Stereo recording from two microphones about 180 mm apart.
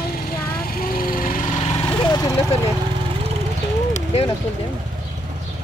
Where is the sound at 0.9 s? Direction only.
50° left (ahead or behind).